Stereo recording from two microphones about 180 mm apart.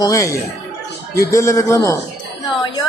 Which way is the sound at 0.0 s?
20° left (ahead or behind).